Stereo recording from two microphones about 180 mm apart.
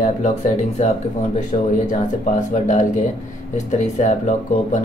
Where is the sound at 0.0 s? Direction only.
40° left (ahead or behind).